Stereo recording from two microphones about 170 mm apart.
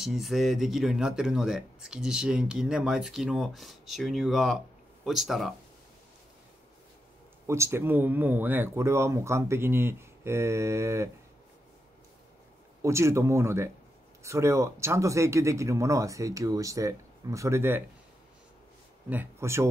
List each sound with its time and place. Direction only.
0.0 s speech: centre (ahead or behind)
7.4 s speech: 15° right (ahead or behind)
12.8 s speech: 15° right (ahead or behind)
19.0 s speech: 15° right (ahead or behind)